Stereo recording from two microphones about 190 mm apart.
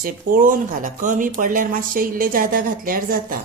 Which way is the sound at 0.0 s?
50° right (ahead or behind).